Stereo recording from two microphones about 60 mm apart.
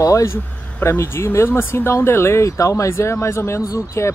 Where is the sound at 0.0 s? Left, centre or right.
Left.